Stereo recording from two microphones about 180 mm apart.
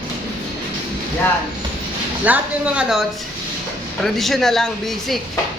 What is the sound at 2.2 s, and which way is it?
A man's voice, 10° right (ahead or behind).